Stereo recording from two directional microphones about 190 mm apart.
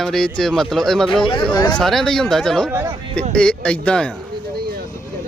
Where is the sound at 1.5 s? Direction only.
20° left (ahead or behind).